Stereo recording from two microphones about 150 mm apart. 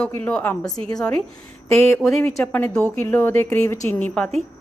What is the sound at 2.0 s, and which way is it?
A woman's voice, centre (ahead or behind).